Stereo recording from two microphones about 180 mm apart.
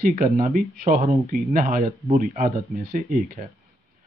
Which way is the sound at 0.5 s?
50° right (ahead or behind).